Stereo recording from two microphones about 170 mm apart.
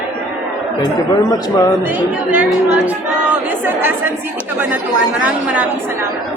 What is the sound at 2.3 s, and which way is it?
Speech, 5° right (ahead or behind).